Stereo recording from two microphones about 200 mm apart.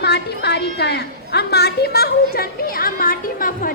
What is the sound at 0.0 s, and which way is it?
A woman's voice, 55° left (ahead or behind).